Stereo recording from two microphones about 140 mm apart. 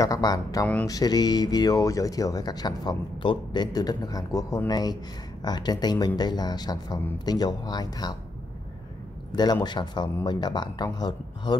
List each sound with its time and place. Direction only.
0.0 s speech: 25° left (ahead or behind)
9.3 s speech: 30° left (ahead or behind)